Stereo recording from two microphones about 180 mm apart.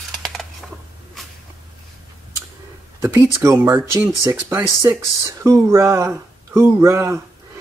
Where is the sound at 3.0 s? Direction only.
15° right (ahead or behind).